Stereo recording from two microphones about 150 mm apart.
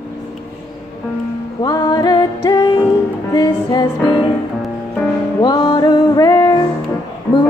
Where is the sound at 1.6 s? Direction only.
25° left (ahead or behind).